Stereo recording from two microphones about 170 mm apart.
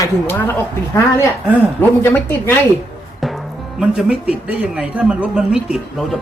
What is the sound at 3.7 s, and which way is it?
A man's voice, 5° right (ahead or behind).